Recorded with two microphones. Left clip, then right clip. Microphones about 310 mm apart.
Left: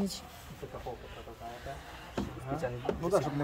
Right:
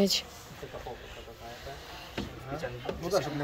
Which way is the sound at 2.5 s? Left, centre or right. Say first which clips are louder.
Left 2 dB; left.